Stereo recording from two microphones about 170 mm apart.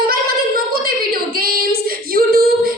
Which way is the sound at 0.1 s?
60° right (ahead or behind).